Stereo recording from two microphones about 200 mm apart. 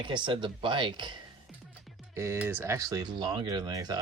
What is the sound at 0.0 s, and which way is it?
Speech, 25° right (ahead or behind).